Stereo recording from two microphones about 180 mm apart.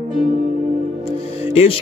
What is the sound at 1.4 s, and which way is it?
Music, 35° left (ahead or behind).